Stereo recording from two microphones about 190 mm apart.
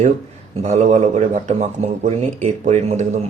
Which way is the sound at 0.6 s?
35° right (ahead or behind).